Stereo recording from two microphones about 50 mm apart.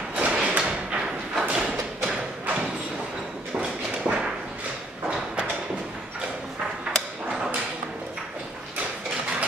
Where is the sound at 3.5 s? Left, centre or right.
Centre.